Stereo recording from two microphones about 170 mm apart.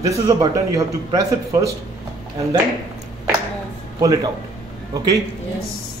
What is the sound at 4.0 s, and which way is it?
Speech, 20° right (ahead or behind).